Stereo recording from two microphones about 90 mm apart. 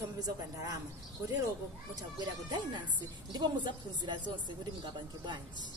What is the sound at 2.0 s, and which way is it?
Speech, 50° right (ahead or behind).